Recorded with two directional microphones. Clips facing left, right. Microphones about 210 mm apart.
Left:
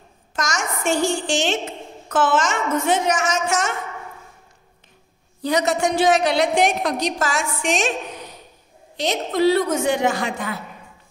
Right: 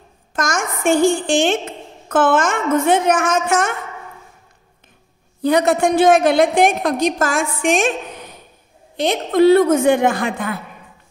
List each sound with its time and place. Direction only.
0.3 s a woman's voice: 55° right (ahead or behind)
5.4 s a woman's voice: 55° right (ahead or behind)